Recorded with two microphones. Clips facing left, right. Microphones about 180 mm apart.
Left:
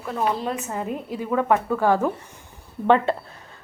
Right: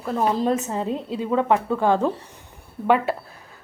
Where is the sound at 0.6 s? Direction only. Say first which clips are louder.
Right 3 dB; 25° right (ahead or behind).